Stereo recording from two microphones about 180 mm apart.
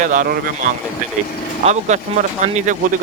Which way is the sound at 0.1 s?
50° right (ahead or behind).